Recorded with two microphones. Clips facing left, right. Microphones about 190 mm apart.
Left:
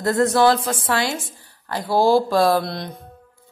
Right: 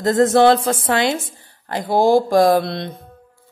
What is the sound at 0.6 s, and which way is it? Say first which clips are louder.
Speech: right 4 dB; 50° right (ahead or behind).